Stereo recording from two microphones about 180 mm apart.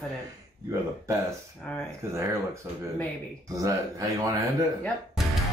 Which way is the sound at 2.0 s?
15° right (ahead or behind).